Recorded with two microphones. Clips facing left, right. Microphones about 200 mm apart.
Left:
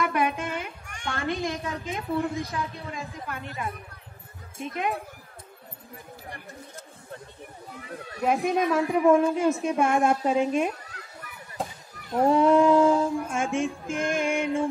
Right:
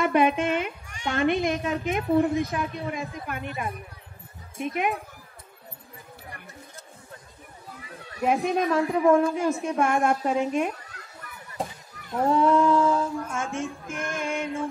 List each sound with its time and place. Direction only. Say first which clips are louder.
0.0 s a child's voice: right 5 dB; 25° right (ahead or behind)
8.2 s speech: even; centre (ahead or behind)
9.1 s a woman's voice: left 1 dB; 20° left (ahead or behind)
12.2 s speech: left 2 dB; 20° left (ahead or behind)